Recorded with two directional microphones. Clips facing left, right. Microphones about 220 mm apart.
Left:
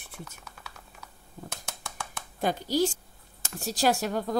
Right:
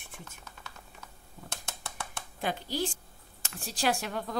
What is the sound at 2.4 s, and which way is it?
A woman's voice, 40° left (ahead or behind).